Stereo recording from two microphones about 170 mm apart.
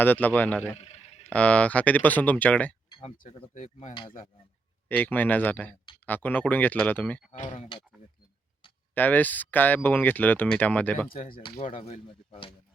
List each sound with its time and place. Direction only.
0.0 s speech: 10° left (ahead or behind)
0.8 s a sound: 40° left (ahead or behind)
1.3 s speech: 10° left (ahead or behind)
3.0 s speech: 40° left (ahead or behind)
4.9 s speech: 10° left (ahead or behind)
7.3 s speech: 45° left (ahead or behind)
9.0 s speech: 10° left (ahead or behind)
11.1 s speech: 55° left (ahead or behind)
11.8 s speech: 30° left (ahead or behind)